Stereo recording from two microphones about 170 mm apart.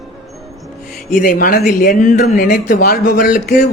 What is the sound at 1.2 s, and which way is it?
Speech, 55° left (ahead or behind).